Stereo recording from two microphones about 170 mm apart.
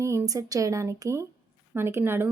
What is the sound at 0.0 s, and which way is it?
A woman's voice, 15° right (ahead or behind).